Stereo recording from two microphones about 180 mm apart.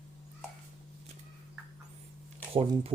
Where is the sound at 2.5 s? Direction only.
30° right (ahead or behind).